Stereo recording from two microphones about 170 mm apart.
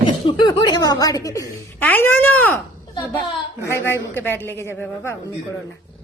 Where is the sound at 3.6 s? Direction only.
15° left (ahead or behind).